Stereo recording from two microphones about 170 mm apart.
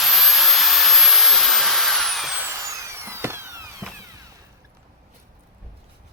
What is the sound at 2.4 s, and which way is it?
Drill, 15° right (ahead or behind).